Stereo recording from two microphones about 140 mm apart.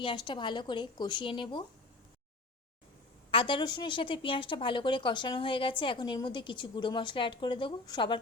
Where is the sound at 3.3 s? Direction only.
35° left (ahead or behind).